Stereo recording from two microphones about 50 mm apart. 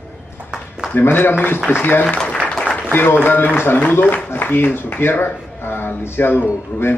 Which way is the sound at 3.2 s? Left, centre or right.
Left.